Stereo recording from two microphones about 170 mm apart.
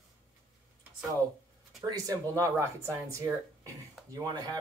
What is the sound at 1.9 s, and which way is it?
Speech, 20° right (ahead or behind).